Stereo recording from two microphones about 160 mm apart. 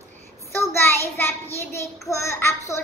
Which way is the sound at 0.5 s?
15° left (ahead or behind).